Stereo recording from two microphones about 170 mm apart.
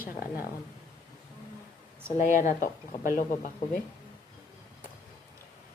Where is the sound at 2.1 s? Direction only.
50° left (ahead or behind).